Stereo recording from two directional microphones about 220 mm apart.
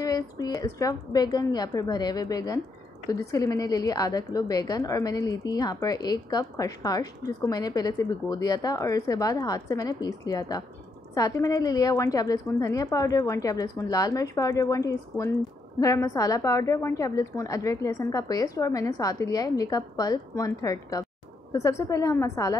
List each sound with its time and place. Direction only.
0.0 s a woman's voice: 15° left (ahead or behind)